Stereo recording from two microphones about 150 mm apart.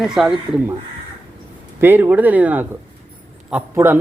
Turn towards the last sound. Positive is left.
turn(degrees=-15)  # may be behind; listen again after turning